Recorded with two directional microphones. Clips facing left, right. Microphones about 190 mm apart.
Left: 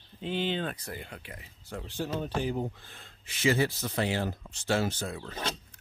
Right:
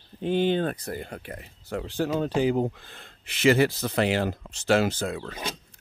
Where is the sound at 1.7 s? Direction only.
90° right.